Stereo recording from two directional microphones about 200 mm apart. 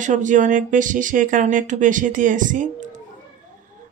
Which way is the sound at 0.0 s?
40° right (ahead or behind).